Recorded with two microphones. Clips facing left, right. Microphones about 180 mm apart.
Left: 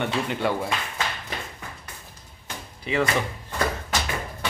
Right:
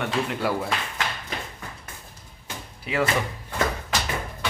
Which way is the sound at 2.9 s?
5° right (ahead or behind).